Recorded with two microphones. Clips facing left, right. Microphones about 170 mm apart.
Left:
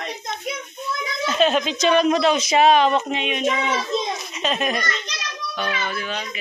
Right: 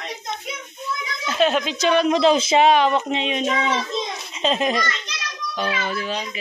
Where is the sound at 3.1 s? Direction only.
30° right (ahead or behind).